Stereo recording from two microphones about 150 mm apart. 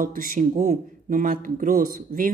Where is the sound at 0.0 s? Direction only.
70° right (ahead or behind).